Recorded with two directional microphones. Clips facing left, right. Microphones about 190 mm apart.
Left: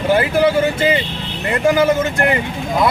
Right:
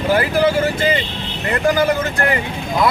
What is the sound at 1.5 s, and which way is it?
Speech, 20° left (ahead or behind).